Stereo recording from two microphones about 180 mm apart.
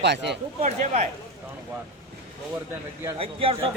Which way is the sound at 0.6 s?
40° right (ahead or behind).